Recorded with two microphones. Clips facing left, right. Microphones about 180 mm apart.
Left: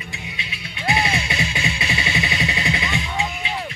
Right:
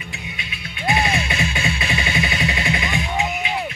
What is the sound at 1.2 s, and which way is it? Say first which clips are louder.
Music: right 2 dB; 25° left (ahead or behind).